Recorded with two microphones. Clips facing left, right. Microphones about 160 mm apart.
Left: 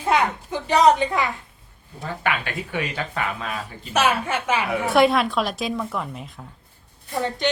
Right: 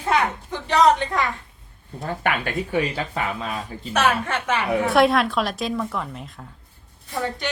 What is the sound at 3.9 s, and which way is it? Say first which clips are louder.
A woman's voice: even; 5° left (ahead or behind).